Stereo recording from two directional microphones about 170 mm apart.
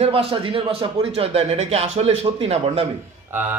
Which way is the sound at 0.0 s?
35° right (ahead or behind).